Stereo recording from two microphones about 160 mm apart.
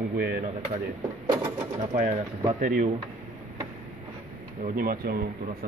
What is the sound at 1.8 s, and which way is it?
Speech, 45° right (ahead or behind).